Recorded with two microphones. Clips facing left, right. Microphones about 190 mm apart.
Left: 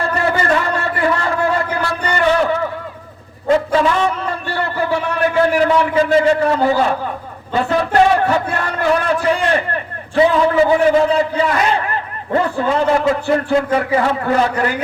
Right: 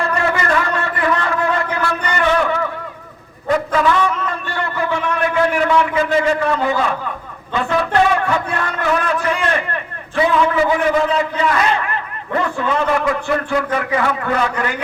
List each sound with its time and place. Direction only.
0.0 s a sound: 30° left (ahead or behind)
7.5 s a man's voice: 35° left (ahead or behind)
12.3 s a man's voice: 30° left (ahead or behind)